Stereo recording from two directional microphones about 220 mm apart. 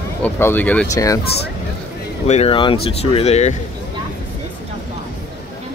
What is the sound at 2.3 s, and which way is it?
Speech, 25° left (ahead or behind).